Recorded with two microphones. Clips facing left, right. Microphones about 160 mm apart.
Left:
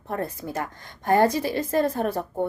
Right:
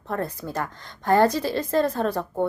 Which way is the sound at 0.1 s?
20° left (ahead or behind).